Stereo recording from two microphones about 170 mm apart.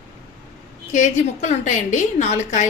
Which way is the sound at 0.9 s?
45° left (ahead or behind).